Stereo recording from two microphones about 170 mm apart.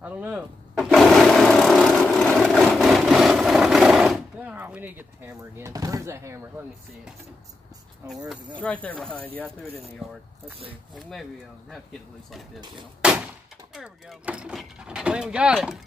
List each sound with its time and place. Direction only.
0.0 s lawn mower: 10° right (ahead or behind)
8.0 s a sound: 15° right (ahead or behind)
8.5 s speech: 10° left (ahead or behind)
11.0 s speech: centre (ahead or behind)
12.5 s speech: 25° right (ahead or behind)
13.0 s glass: 5° right (ahead or behind)
13.7 s speech: 5° right (ahead or behind)